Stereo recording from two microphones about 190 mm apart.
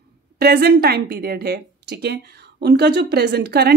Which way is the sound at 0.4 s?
55° right (ahead or behind).